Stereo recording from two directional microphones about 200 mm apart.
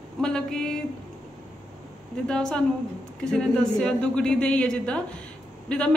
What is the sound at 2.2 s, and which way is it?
A woman's voice, 5° left (ahead or behind).